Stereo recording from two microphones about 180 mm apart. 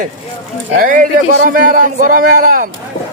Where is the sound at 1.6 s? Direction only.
45° right (ahead or behind).